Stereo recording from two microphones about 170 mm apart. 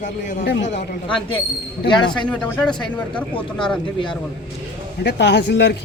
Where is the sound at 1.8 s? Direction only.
25° left (ahead or behind).